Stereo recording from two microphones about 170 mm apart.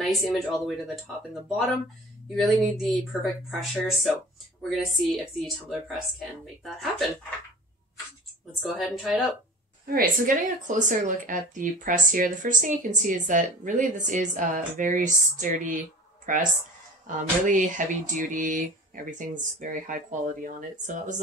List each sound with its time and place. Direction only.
0.0 s speech: centre (ahead or behind)
2.3 s speech: centre (ahead or behind)
8.6 s speech: centre (ahead or behind)
9.8 s speech: 55° right (ahead or behind)
17.5 s speech: 50° right (ahead or behind)